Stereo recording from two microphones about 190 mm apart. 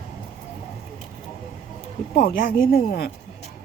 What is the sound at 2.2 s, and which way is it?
Speech, 50° left (ahead or behind).